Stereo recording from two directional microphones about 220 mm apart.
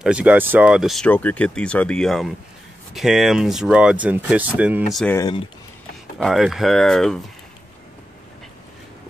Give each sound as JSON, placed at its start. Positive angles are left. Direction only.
{"t": 0.0, "sound": "speech", "side_deg": -5}
{"t": 5.1, "sound": "speech", "side_deg": 15}
{"t": 6.1, "sound": "speech", "side_deg": 0}